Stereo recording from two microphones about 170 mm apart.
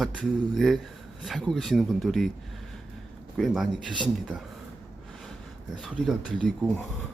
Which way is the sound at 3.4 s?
Centre (ahead or behind).